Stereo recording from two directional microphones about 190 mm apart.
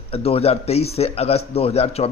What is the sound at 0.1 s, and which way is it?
A man's voice, 30° left (ahead or behind).